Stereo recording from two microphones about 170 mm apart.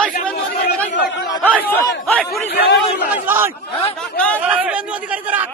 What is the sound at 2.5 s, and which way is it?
Speech, 70° left (ahead or behind).